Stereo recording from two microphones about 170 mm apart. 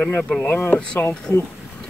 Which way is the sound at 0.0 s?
5° left (ahead or behind).